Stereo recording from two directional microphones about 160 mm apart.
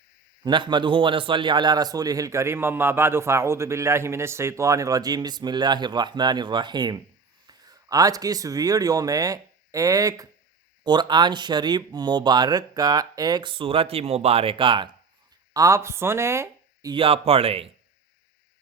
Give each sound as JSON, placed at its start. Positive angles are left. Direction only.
{"t": 0.4, "sound": "a man's voice", "side_deg": -30}
{"t": 15.5, "sound": "speech", "side_deg": -20}
{"t": 16.9, "sound": "speech", "side_deg": -35}